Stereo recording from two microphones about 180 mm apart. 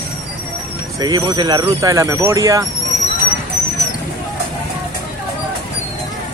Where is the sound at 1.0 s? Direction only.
20° right (ahead or behind).